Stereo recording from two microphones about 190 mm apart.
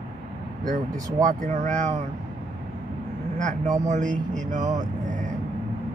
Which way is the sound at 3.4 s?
40° right (ahead or behind).